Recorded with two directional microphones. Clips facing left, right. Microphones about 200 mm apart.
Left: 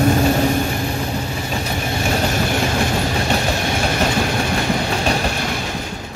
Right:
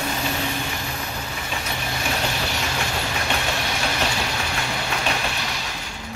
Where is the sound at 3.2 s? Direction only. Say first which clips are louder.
Left 6 dB; 40° left (ahead or behind).